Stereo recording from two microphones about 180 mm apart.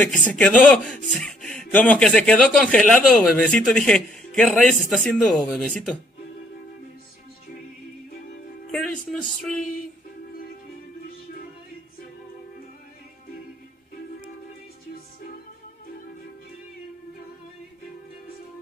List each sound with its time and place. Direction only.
0.0 s speech: 10° left (ahead or behind)
8.7 s speech: 5° left (ahead or behind)